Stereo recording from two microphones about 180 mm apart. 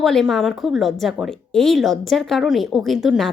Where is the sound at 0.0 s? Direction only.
Centre (ahead or behind).